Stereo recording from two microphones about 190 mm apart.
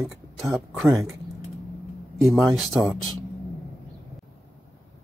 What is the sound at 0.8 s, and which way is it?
Speech, 15° right (ahead or behind).